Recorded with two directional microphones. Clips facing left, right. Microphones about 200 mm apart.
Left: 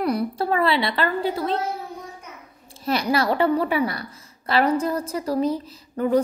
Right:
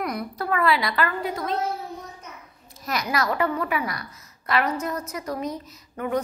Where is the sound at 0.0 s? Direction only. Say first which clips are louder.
Left 6 dB; 30° left (ahead or behind).